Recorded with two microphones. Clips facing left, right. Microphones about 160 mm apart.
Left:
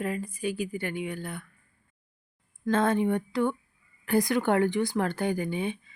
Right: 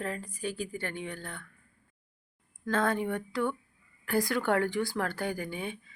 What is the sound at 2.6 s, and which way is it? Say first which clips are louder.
Speech: left 5 dB; 20° left (ahead or behind).